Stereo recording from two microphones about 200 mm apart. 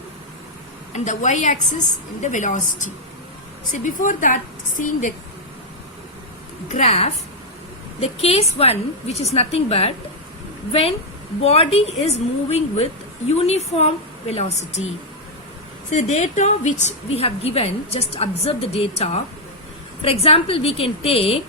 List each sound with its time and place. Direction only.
0.9 s a woman's voice: 35° left (ahead or behind)
6.7 s a woman's voice: 35° left (ahead or behind)
15.9 s a woman's voice: 35° left (ahead or behind)